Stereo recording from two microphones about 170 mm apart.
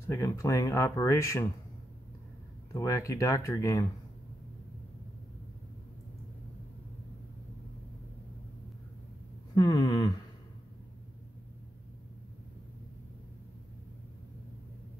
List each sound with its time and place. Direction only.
0.0 s speech: 15° left (ahead or behind)
2.7 s speech: 15° left (ahead or behind)
9.6 s speech: 20° left (ahead or behind)